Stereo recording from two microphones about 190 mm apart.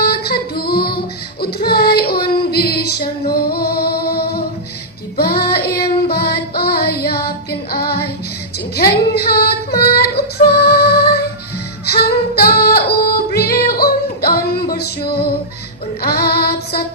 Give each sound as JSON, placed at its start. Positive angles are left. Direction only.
{"t": 0.0, "sound": "child singing", "side_deg": 55}
{"t": 3.2, "sound": "music", "side_deg": 55}
{"t": 5.1, "sound": "child singing", "side_deg": 55}
{"t": 8.7, "sound": "female singing", "side_deg": 55}
{"t": 11.9, "sound": "music", "side_deg": 55}
{"t": 16.0, "sound": "child singing", "side_deg": 55}